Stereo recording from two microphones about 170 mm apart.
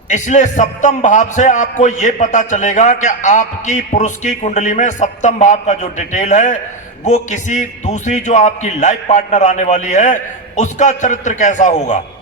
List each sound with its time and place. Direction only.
0.1 s a man's voice: 45° left (ahead or behind)